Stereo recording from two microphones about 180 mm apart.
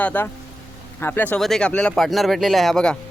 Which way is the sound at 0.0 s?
10° left (ahead or behind).